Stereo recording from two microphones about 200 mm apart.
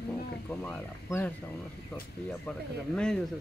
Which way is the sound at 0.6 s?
10° left (ahead or behind).